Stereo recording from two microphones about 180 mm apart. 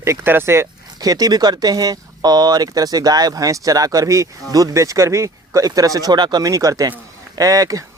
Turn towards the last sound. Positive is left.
turn(degrees=-20)  # may be behind; listen again after turning